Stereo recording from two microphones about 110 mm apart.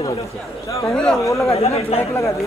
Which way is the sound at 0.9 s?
5° left (ahead or behind).